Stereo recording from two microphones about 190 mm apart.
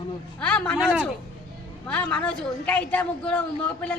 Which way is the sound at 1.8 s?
10° left (ahead or behind).